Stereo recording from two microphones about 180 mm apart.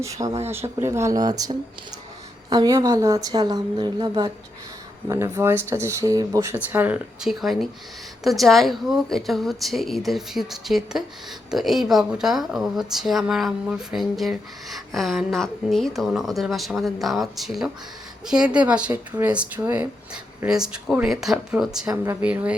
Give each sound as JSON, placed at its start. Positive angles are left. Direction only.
{"t": 0.0, "sound": "a woman's voice", "side_deg": -15}